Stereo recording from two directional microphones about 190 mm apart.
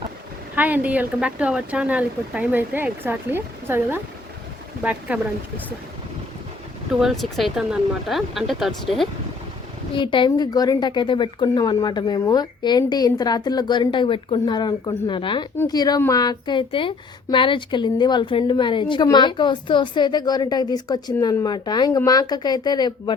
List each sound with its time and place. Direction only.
0.5 s speech: 10° right (ahead or behind)
7.0 s speech: centre (ahead or behind)
9.9 s a woman's voice: 25° left (ahead or behind)